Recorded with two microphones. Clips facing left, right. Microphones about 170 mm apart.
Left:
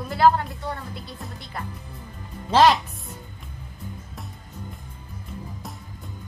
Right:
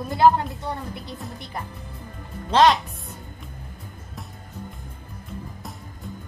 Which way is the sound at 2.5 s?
Centre (ahead or behind).